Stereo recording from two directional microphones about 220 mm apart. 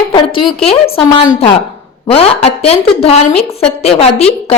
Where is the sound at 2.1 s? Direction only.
25° left (ahead or behind).